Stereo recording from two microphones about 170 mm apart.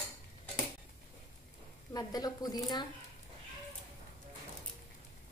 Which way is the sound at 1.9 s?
25° left (ahead or behind).